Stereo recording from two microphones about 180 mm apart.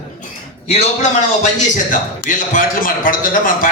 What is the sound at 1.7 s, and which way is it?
A man's voice, 45° left (ahead or behind).